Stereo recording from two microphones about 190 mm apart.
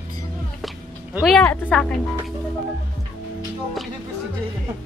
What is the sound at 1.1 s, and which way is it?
Music, centre (ahead or behind).